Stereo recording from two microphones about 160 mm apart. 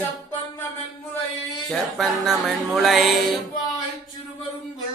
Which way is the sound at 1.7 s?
Centre (ahead or behind).